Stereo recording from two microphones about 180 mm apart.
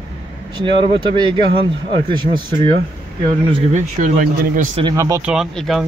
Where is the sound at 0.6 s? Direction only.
25° right (ahead or behind).